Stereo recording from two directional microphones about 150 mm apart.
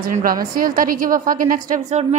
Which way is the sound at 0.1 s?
65° right (ahead or behind).